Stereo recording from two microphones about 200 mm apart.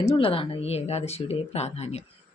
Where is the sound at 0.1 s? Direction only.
25° left (ahead or behind).